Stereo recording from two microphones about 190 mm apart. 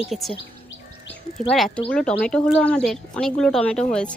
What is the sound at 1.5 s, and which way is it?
Speech, centre (ahead or behind).